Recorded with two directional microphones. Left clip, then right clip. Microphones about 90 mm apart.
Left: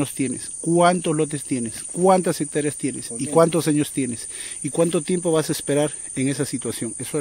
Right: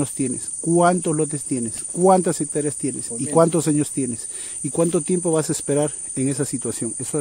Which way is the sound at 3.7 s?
20° right (ahead or behind).